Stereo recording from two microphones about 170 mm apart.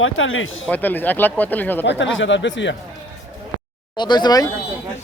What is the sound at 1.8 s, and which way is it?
Speech, 90° left.